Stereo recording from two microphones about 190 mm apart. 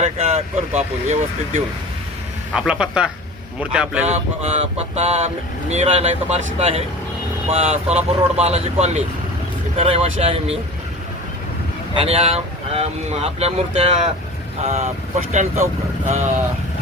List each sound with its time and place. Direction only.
0.0 s vehicle: 35° right (ahead or behind)
0.8 s speech: 35° right (ahead or behind)
2.5 s speech: 5° right (ahead or behind)
4.0 s speech: 35° right (ahead or behind)
11.9 s speech: 30° right (ahead or behind)